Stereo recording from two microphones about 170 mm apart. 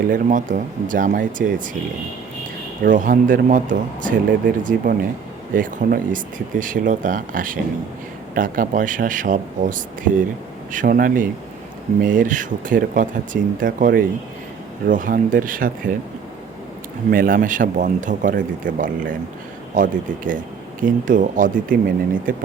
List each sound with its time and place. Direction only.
0.1 s speech: 50° right (ahead or behind)
2.8 s speech: 50° right (ahead or behind)
17.1 s speech: 55° right (ahead or behind)